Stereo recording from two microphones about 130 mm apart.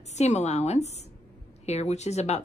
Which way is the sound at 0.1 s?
60° left (ahead or behind).